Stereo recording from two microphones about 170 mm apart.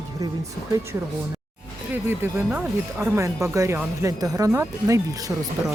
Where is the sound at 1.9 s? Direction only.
15° right (ahead or behind).